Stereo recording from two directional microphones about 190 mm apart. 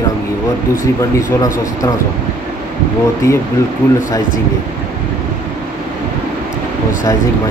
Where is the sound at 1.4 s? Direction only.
20° left (ahead or behind).